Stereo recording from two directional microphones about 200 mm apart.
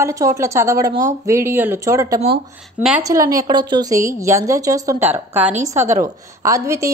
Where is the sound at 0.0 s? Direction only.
15° right (ahead or behind).